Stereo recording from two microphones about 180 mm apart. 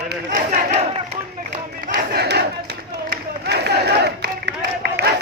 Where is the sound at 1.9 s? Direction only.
65° right (ahead or behind).